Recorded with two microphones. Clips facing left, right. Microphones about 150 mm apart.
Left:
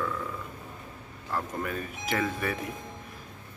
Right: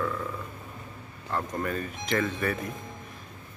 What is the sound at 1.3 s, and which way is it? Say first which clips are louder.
Speech: right 2 dB; 5° left (ahead or behind).